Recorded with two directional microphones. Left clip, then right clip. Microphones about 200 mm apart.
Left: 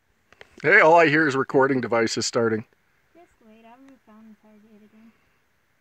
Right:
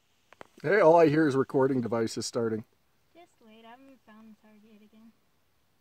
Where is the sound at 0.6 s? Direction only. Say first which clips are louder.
Left 6 dB; 10° left (ahead or behind).